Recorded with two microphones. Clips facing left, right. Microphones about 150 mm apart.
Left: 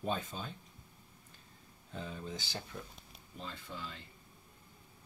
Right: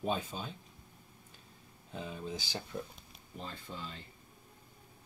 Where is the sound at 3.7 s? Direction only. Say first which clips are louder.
Right 1 dB; 15° right (ahead or behind).